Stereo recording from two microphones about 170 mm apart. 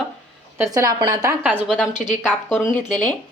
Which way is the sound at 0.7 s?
20° right (ahead or behind).